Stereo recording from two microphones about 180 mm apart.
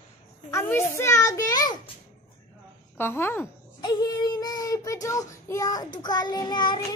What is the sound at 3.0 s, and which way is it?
Speech, 10° left (ahead or behind).